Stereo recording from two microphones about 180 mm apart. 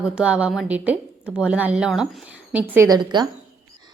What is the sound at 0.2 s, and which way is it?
A woman's voice, 5° right (ahead or behind).